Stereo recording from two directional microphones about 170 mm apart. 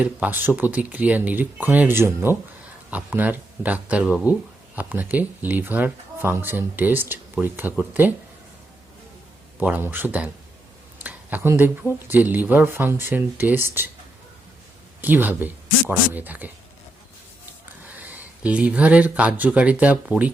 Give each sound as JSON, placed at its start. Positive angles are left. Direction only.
{"t": 0.0, "sound": "speech", "side_deg": -10}
{"t": 9.6, "sound": "speech", "side_deg": -10}
{"t": 10.9, "sound": "a sound", "side_deg": -10}
{"t": 12.0, "sound": "speech", "side_deg": -10}
{"t": 15.0, "sound": "speech", "side_deg": -10}
{"t": 17.8, "sound": "speech", "side_deg": -10}